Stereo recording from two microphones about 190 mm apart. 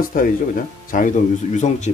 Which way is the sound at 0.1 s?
45° left (ahead or behind).